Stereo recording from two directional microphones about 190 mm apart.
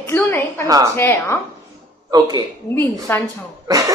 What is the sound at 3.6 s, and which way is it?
Cough, 20° right (ahead or behind).